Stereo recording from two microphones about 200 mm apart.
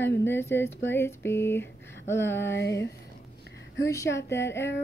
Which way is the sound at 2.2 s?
60° left (ahead or behind).